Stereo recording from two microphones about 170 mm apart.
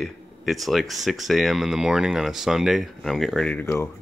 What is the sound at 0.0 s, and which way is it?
Speech, centre (ahead or behind).